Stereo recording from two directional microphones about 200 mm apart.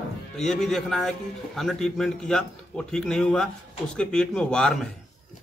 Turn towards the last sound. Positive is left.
turn(degrees=5)  # may be behind; listen again after turning